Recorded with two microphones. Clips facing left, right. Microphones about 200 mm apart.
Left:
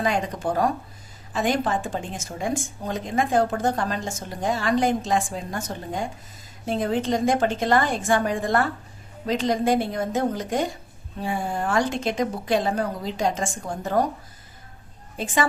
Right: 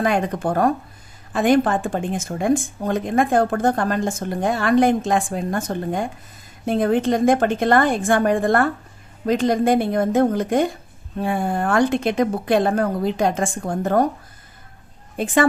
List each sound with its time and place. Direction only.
0.0 s speech: 55° right (ahead or behind)
15.1 s a woman's voice: 55° right (ahead or behind)